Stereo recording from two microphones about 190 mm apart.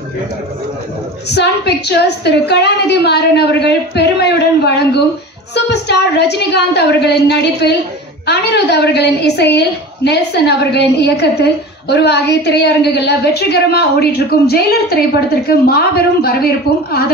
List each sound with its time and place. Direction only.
1.3 s a woman's voice: 60° left (ahead or behind)